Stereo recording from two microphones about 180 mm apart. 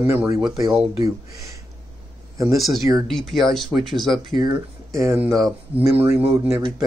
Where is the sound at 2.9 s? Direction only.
Centre (ahead or behind).